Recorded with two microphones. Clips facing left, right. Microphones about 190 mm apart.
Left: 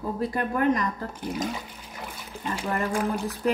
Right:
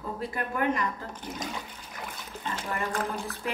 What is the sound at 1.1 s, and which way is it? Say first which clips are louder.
Speech: left 7 dB; 10° left (ahead or behind).